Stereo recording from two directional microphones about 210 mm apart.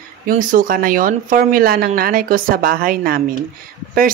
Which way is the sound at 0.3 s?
40° right (ahead or behind).